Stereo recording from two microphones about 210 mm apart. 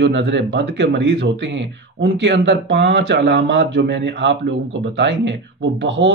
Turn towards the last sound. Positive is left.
turn(degrees=-60)  # may be behind; listen again after turning